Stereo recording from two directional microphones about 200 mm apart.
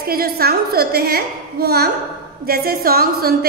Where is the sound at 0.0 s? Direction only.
50° right (ahead or behind).